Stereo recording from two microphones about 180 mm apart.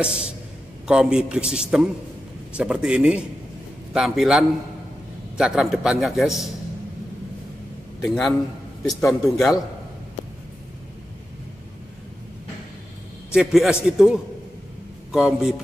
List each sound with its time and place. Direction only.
0.0 s a man's voice: 5° right (ahead or behind)
8.1 s a man's voice: centre (ahead or behind)
13.3 s a man's voice: 5° right (ahead or behind)